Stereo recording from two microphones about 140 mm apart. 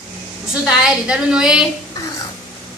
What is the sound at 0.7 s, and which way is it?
A woman's voice, 5° right (ahead or behind).